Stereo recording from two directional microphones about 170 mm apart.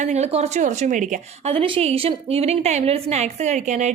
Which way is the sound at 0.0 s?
40° right (ahead or behind).